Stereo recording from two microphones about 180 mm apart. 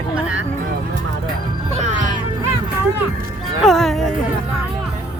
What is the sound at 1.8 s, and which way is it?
Music, 40° right (ahead or behind).